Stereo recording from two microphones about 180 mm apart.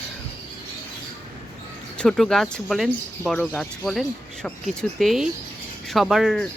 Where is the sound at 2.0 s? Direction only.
Centre (ahead or behind).